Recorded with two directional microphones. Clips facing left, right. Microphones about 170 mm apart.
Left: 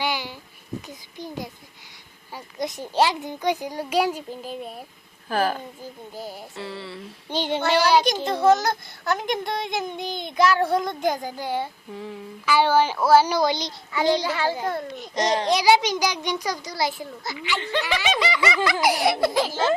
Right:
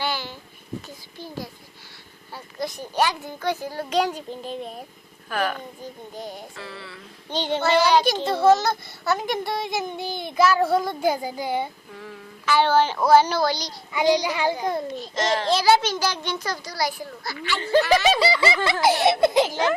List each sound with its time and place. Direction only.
0.0 s a sound: 15° left (ahead or behind)
0.9 s a child's voice: 20° left (ahead or behind)
5.3 s speech: 35° left (ahead or behind)
6.1 s speech: 5° left (ahead or behind)
6.6 s a child's voice: 30° left (ahead or behind)
7.3 s a child's voice: 10° left (ahead or behind)
8.0 s speech: 5° right (ahead or behind)
12.5 s a child's voice: 10° left (ahead or behind)
13.9 s a child's voice: 15° right (ahead or behind)
14.9 s a child's voice: 20° left (ahead or behind)
17.6 s speech: 40° right (ahead or behind); by 19.6 s 20° right (ahead or behind)